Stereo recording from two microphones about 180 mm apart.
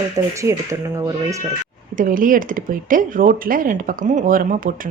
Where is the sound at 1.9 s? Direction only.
50° right (ahead or behind).